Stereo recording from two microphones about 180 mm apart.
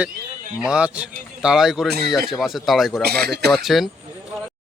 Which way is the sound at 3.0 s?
60° right (ahead or behind).